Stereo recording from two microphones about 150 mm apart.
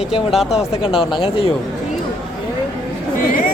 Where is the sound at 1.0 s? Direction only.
35° left (ahead or behind).